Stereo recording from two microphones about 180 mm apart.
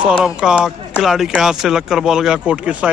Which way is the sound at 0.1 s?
5° right (ahead or behind).